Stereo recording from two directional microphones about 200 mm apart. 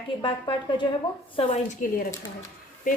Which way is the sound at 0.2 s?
25° left (ahead or behind).